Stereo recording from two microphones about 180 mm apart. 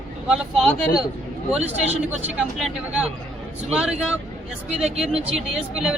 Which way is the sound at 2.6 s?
5° right (ahead or behind).